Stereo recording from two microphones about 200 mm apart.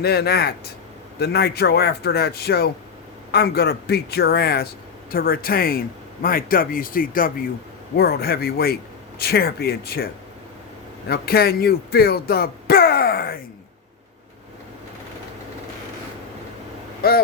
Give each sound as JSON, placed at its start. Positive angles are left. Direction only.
{"t": 0.0, "sound": "speech", "side_deg": 50}
{"t": 11.1, "sound": "speech", "side_deg": 50}
{"t": 17.0, "sound": "speech", "side_deg": 50}